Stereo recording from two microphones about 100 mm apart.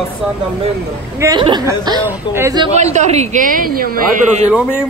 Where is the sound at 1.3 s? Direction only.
50° right (ahead or behind).